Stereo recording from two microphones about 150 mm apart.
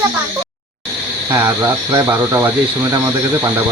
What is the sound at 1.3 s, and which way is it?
Speech, 15° right (ahead or behind).